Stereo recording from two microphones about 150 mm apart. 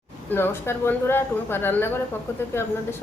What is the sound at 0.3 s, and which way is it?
Speech, 15° left (ahead or behind).